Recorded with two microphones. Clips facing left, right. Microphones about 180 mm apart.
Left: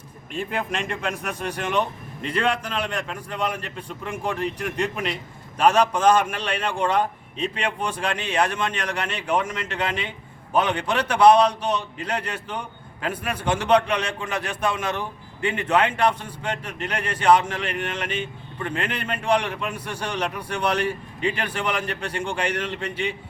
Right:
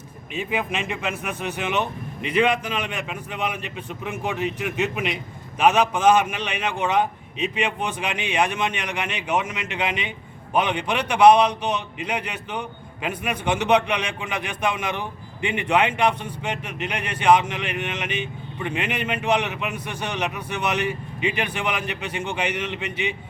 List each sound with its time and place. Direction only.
0.3 s a man's voice: 5° right (ahead or behind)